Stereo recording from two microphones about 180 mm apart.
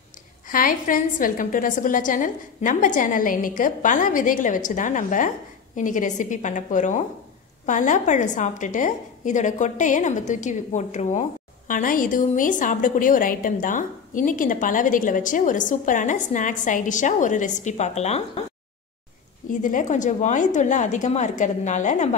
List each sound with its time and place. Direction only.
0.5 s a woman's voice: 50° left (ahead or behind)
19.6 s a woman's voice: 45° left (ahead or behind)